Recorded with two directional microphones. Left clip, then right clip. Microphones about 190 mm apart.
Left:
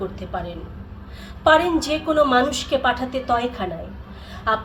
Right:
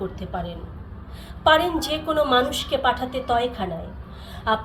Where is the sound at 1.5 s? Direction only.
15° left (ahead or behind).